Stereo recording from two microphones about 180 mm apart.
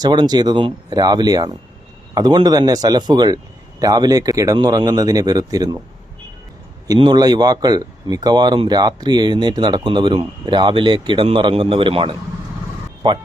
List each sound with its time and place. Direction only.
0.0 s speech: 25° right (ahead or behind)
6.8 s speech: 25° right (ahead or behind)